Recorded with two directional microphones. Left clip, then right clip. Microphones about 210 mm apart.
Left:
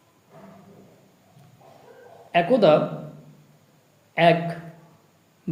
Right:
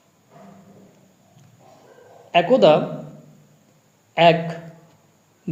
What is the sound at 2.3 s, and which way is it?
Speech, 20° right (ahead or behind).